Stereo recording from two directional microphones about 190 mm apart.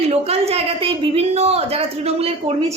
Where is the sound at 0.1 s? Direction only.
35° right (ahead or behind).